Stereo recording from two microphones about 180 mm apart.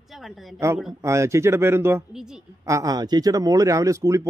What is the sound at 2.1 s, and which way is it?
Speech, 5° right (ahead or behind).